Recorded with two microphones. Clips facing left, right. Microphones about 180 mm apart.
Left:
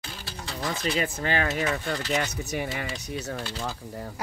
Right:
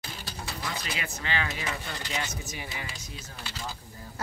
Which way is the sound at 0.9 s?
50° left (ahead or behind).